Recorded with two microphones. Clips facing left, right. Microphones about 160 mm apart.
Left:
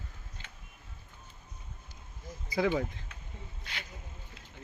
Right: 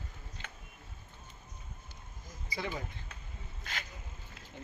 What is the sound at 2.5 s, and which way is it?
Speech, 75° left (ahead or behind).